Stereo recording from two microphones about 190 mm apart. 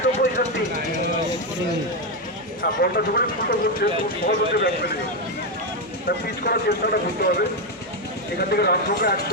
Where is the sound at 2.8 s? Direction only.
55° left (ahead or behind).